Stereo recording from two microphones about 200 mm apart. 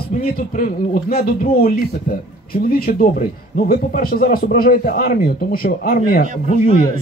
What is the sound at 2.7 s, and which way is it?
Speech, 45° left (ahead or behind).